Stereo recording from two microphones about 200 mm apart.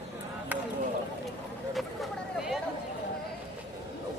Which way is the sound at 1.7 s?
Centre (ahead or behind).